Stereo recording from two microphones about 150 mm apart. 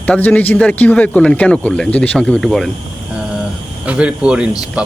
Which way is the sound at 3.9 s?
5° right (ahead or behind).